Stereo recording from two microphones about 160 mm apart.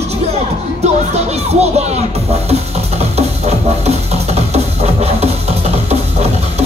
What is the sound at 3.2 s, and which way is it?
Music, 40° right (ahead or behind).